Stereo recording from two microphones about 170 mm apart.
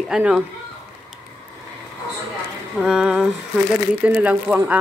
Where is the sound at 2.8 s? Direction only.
5° right (ahead or behind).